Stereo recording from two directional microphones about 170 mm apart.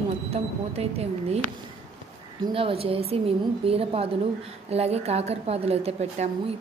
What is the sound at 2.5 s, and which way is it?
A woman's voice, 35° right (ahead or behind).